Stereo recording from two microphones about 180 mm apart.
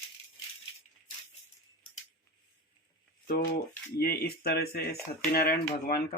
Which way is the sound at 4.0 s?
60° left (ahead or behind).